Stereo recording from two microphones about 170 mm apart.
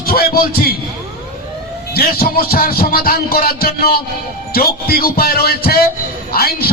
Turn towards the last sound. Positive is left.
turn(degrees=60)  # may be behind; listen again after turning